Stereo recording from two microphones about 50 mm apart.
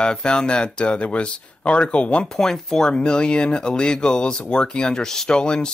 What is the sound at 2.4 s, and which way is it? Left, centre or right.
Speech, centre.